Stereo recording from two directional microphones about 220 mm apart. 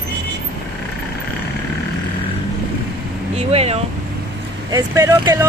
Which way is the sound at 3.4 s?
25° right (ahead or behind).